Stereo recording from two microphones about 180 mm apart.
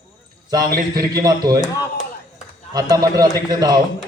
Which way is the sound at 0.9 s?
20° right (ahead or behind).